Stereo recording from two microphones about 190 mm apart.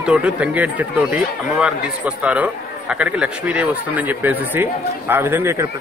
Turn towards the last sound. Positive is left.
turn(degrees=-15)  # may be behind; listen again after turning